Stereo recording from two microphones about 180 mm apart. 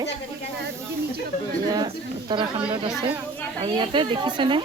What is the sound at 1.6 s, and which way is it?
Speech, 20° right (ahead or behind).